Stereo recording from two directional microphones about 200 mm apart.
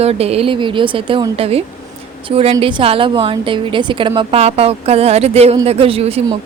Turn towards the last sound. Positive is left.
turn(degrees=-30)  # may be behind; listen again after turning